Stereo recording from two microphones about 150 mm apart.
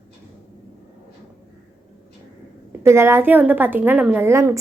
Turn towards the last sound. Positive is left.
turn(degrees=-15)  # may be behind; listen again after turning